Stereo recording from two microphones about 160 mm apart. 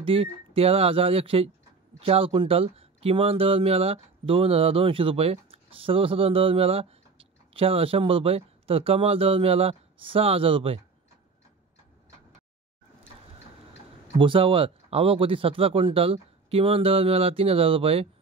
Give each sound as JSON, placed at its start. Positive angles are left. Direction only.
{"t": 0.0, "sound": "speech", "side_deg": -35}
{"t": 14.1, "sound": "speech", "side_deg": -30}